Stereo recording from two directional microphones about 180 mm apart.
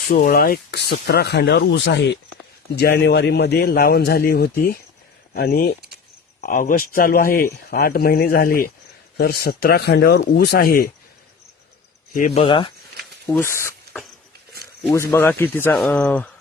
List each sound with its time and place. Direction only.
0.3 s speech: 55° left (ahead or behind)
12.1 s speech: 45° left (ahead or behind)
12.4 s speech: 30° left (ahead or behind)
13.2 s speech: 15° left (ahead or behind)
14.9 s speech: 15° left (ahead or behind)